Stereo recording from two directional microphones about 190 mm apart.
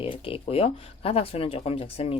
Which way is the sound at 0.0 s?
30° left (ahead or behind).